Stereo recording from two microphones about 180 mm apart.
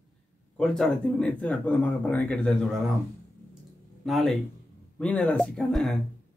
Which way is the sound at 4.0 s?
Centre (ahead or behind).